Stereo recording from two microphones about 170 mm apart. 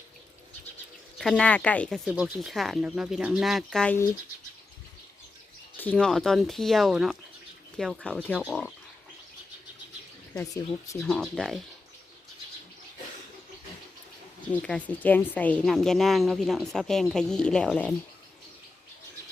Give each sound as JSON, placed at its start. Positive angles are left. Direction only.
{"t": 1.2, "sound": "speech", "side_deg": 5}
{"t": 2.0, "sound": "a woman's voice", "side_deg": -5}
{"t": 5.7, "sound": "a woman's voice", "side_deg": 10}
{"t": 10.4, "sound": "speech", "side_deg": 20}
{"t": 11.0, "sound": "a woman's voice", "side_deg": 0}
{"t": 14.4, "sound": "a woman's voice", "side_deg": 5}